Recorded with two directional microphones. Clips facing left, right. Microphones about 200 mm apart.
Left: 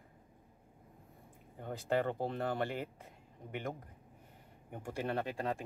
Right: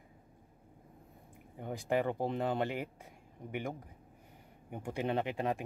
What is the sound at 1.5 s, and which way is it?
Speech, 15° right (ahead or behind).